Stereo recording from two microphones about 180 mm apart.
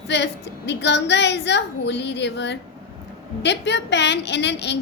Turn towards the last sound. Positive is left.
turn(degrees=75)  # may be behind; listen again after turning